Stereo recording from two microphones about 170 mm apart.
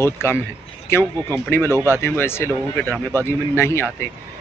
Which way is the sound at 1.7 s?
15° left (ahead or behind).